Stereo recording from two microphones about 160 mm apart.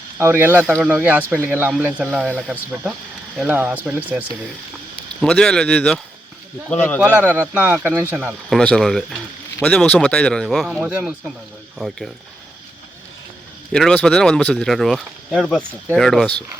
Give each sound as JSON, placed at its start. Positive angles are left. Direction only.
{"t": 0.2, "sound": "speech", "side_deg": -15}
{"t": 0.6, "sound": "speech", "side_deg": 0}
{"t": 0.9, "sound": "speech", "side_deg": -10}
{"t": 5.2, "sound": "speech", "side_deg": 5}
{"t": 7.0, "sound": "speech", "side_deg": -10}
{"t": 8.4, "sound": "speech", "side_deg": 5}
{"t": 13.7, "sound": "speech", "side_deg": 5}